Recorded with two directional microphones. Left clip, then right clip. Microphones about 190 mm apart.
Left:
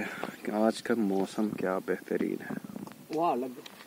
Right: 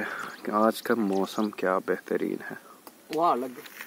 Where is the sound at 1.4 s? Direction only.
50° right (ahead or behind).